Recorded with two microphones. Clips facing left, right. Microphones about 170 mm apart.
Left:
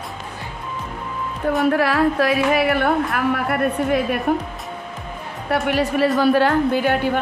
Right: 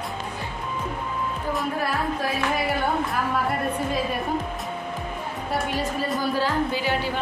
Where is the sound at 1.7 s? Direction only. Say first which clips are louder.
Left 11 dB; 90° left; by 4.2 s 65° left (ahead or behind).